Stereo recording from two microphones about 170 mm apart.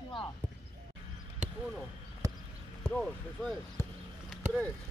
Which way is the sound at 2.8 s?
5° left (ahead or behind).